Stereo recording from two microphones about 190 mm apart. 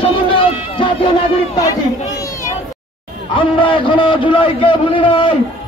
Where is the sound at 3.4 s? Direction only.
25° left (ahead or behind).